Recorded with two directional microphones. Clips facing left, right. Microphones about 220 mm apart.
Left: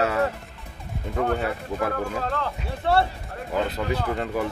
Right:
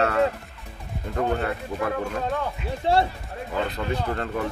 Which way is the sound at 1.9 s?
15° right (ahead or behind).